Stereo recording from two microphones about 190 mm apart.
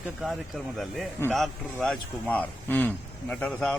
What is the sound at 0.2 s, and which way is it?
Speech, centre (ahead or behind).